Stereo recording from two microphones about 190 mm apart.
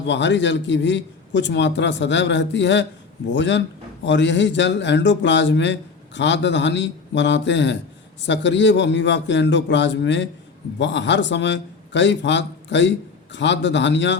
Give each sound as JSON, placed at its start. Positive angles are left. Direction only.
{"t": 0.0, "sound": "a man's voice", "side_deg": 70}